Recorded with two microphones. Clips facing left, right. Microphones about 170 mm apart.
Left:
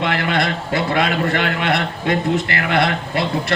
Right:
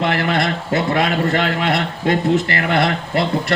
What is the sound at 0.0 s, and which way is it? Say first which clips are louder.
A man's voice: right 1 dB; 40° right (ahead or behind).